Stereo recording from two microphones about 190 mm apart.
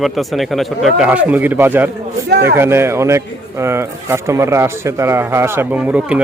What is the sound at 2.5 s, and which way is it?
A man's voice, 15° right (ahead or behind).